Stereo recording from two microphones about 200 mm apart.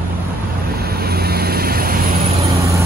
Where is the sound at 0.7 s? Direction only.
50° right (ahead or behind).